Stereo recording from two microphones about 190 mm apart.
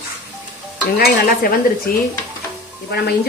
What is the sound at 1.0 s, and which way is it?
Speech, 50° left (ahead or behind).